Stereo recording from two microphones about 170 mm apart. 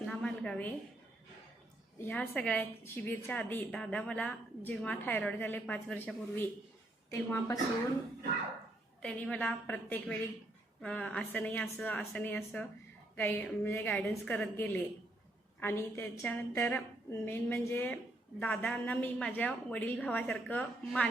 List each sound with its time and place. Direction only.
0.0 s a sound: 5° left (ahead or behind)
2.0 s a woman's voice: 10° left (ahead or behind)
9.0 s a woman's voice: 5° left (ahead or behind)